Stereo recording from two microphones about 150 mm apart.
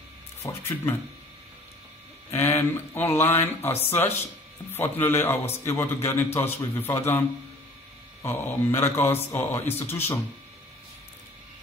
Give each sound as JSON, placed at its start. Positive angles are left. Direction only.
{"t": 0.4, "sound": "a man's voice", "side_deg": 15}
{"t": 2.3, "sound": "a man's voice", "side_deg": 15}